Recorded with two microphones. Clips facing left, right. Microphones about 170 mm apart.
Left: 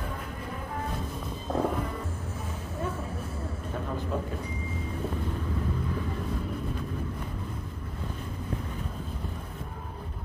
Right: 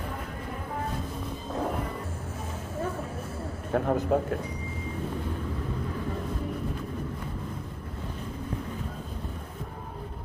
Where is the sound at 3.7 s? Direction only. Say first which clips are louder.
Right 9 dB; 65° right (ahead or behind).